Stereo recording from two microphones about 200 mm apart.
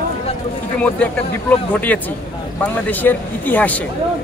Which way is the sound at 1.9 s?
10° left (ahead or behind).